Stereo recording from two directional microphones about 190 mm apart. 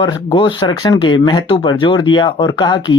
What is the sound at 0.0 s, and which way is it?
Speech, 25° left (ahead or behind).